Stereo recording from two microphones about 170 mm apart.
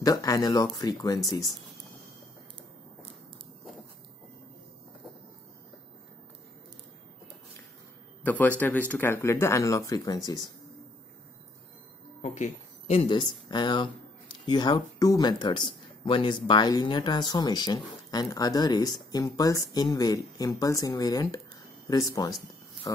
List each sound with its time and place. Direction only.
0.0 s speech: 20° left (ahead or behind)
8.2 s speech: 10° left (ahead or behind)
12.2 s a sound: 40° left (ahead or behind)
13.1 s speech: 25° left (ahead or behind)